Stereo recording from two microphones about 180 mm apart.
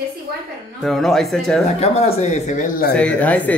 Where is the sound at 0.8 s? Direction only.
Centre (ahead or behind).